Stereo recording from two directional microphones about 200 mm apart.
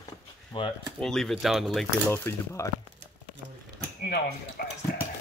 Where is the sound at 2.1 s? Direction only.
10° left (ahead or behind).